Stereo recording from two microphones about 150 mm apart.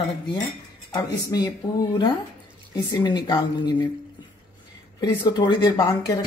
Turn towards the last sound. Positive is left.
turn(degrees=25)  # may be behind; listen again after turning